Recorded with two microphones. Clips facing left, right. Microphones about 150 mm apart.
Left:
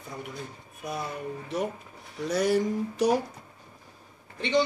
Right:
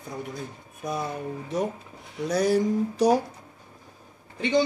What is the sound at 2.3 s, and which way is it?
Speech, 40° right (ahead or behind).